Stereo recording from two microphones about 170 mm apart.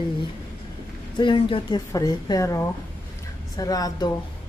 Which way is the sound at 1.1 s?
30° left (ahead or behind).